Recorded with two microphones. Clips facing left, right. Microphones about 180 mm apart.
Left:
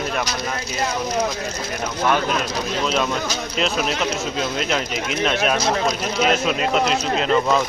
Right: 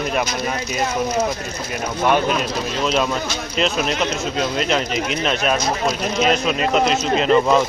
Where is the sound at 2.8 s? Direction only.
Centre (ahead or behind).